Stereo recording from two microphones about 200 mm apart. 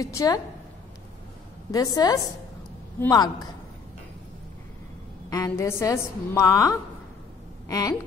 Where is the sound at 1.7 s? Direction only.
20° left (ahead or behind).